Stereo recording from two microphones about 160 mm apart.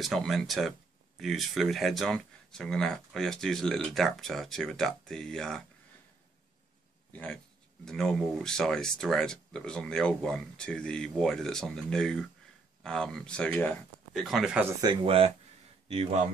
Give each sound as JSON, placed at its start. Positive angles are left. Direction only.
{"t": 0.0, "sound": "speech", "side_deg": 0}
{"t": 7.1, "sound": "speech", "side_deg": 10}
{"t": 14.8, "sound": "speech", "side_deg": -30}